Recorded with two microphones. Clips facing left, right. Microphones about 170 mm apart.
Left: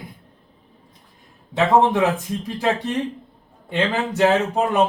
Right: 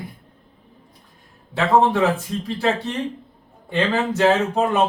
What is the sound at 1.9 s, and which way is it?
Speech, 15° left (ahead or behind).